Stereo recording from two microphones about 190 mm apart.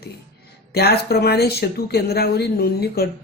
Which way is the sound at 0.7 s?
55° left (ahead or behind).